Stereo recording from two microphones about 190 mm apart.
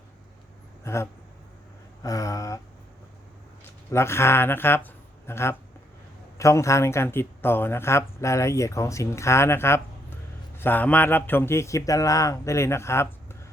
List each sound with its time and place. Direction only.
0.9 s speech: 15° left (ahead or behind)
2.0 s speech: 15° left (ahead or behind)
3.9 s speech: 15° left (ahead or behind)